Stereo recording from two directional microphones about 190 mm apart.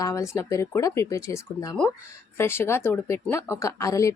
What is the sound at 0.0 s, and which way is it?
Speech, 15° left (ahead or behind).